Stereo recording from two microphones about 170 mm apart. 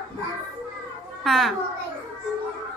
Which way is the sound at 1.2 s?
Centre (ahead or behind).